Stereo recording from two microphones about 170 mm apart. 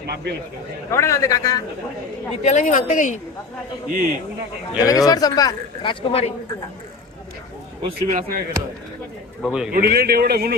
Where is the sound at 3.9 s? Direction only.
50° right (ahead or behind).